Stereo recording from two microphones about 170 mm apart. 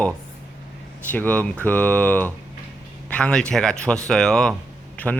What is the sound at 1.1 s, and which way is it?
A man's voice, 10° left (ahead or behind).